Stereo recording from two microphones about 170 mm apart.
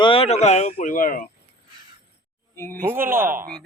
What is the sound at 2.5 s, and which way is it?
Speech, 10° left (ahead or behind).